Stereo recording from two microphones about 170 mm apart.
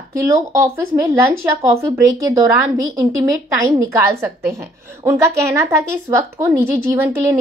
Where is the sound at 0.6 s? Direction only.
15° right (ahead or behind).